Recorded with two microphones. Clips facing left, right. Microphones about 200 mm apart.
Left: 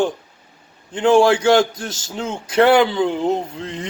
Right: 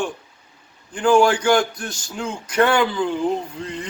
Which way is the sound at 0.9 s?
25° left (ahead or behind).